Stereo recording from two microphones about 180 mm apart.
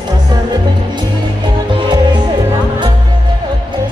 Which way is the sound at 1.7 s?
25° right (ahead or behind).